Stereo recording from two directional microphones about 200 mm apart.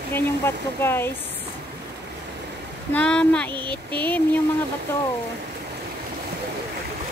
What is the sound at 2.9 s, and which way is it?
Speech, 5° left (ahead or behind).